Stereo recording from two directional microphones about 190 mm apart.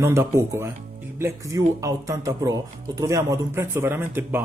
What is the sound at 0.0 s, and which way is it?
Speech, 10° right (ahead or behind).